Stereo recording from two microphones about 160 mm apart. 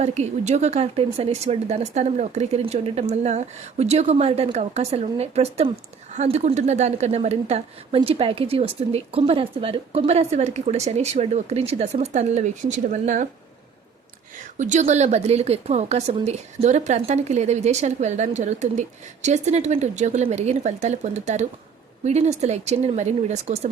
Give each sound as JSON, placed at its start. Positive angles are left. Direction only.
{"t": 0.0, "sound": "a woman's voice", "side_deg": -45}
{"t": 14.3, "sound": "speech", "side_deg": -50}